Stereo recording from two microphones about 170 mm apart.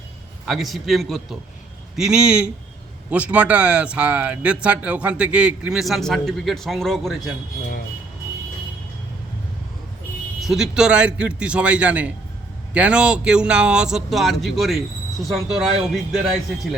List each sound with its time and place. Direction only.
0.4 s speech: centre (ahead or behind)
10.4 s speech: centre (ahead or behind)